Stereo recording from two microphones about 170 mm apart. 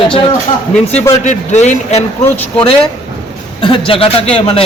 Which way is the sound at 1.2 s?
45° left (ahead or behind).